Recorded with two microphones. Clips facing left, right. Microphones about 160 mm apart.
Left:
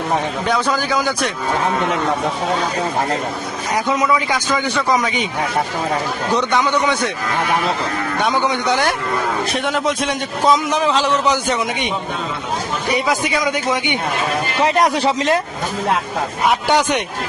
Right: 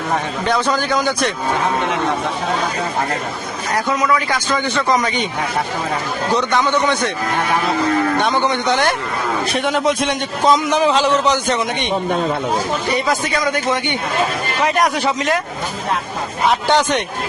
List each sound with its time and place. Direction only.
0.4 s a man's voice: 5° left (ahead or behind)
4.1 s a man's voice: 10° left (ahead or behind)
6.3 s a man's voice: 10° left (ahead or behind)
8.2 s a man's voice: 10° left (ahead or behind)
12.9 s a man's voice: 10° left (ahead or behind)
14.6 s a man's voice: 30° left (ahead or behind)
16.5 s a man's voice: 10° left (ahead or behind)